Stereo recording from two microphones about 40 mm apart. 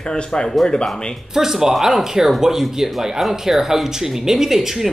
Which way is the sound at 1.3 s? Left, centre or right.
Centre.